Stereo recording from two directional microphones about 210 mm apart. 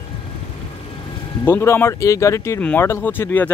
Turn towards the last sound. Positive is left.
turn(degrees=10)  # may be behind; listen again after turning